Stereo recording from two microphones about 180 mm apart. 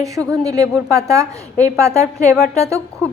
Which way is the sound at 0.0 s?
20° right (ahead or behind).